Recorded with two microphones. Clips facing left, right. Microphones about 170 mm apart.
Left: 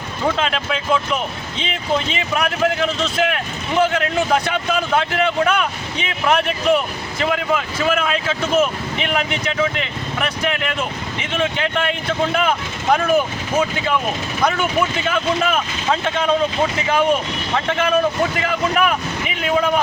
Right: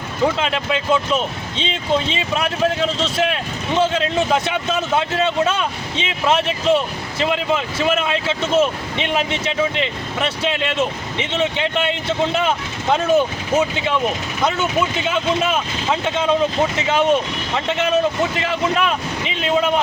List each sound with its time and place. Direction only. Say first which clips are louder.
0.4 s speech: right 1 dB; 20° right (ahead or behind)